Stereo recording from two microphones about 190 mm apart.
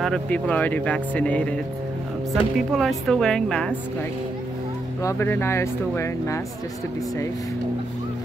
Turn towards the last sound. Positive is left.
turn(degrees=15)  # may be behind; listen again after turning